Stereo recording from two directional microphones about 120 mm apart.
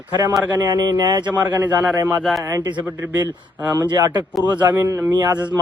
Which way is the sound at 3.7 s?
30° right (ahead or behind).